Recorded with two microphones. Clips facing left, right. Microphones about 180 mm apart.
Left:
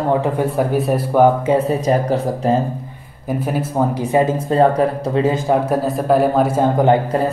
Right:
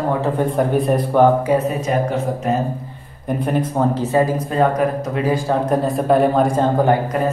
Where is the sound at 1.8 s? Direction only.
35° left (ahead or behind).